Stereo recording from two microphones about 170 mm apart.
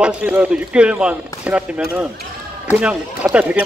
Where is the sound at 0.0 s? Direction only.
10° right (ahead or behind).